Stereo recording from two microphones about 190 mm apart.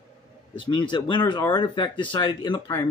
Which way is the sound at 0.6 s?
25° left (ahead or behind).